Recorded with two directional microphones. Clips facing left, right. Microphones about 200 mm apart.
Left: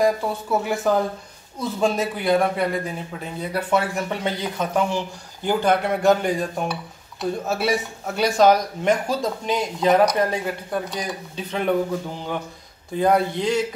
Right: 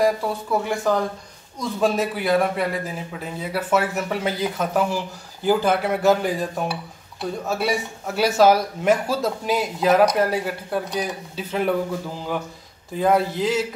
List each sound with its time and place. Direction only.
0.0 s a man's voice: centre (ahead or behind)
12.9 s a man's voice: centre (ahead or behind)